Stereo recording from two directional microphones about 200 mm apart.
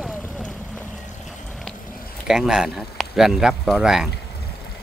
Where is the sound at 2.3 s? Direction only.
5° right (ahead or behind).